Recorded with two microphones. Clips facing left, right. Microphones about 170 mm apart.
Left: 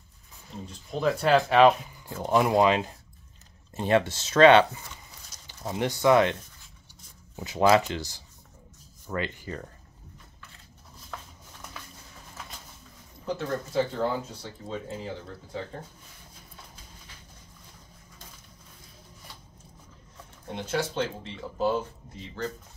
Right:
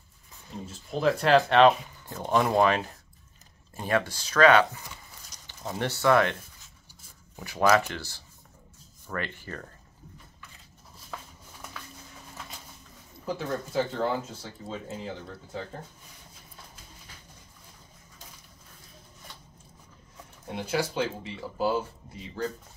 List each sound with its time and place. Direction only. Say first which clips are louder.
0.7 s speech: right 1 dB; centre (ahead or behind); by 4.6 s 25° left (ahead or behind)
5.6 s speech: left 2 dB; 15° left (ahead or behind)
7.3 s speech: left 2 dB; 20° left (ahead or behind)
13.2 s speech: left 1 dB; 5° right (ahead or behind)
20.4 s speech: even; 10° right (ahead or behind)